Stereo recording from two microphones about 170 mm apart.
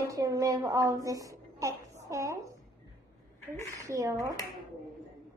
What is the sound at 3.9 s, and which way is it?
Speech, 20° right (ahead or behind).